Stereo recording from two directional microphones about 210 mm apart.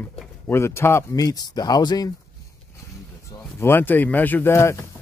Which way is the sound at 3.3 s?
10° left (ahead or behind).